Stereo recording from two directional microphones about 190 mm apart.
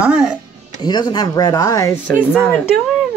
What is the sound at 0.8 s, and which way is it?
Speech, 20° left (ahead or behind).